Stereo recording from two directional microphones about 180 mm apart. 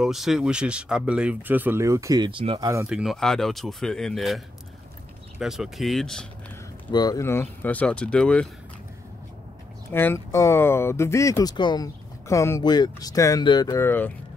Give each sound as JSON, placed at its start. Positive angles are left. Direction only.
{"t": 0.0, "sound": "speech", "side_deg": 0}
{"t": 2.9, "sound": "speech", "side_deg": -5}
{"t": 5.4, "sound": "speech", "side_deg": 0}
{"t": 6.9, "sound": "speech", "side_deg": 20}
{"t": 9.9, "sound": "speech", "side_deg": 15}